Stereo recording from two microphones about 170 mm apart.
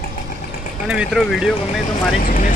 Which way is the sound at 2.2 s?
55° left (ahead or behind).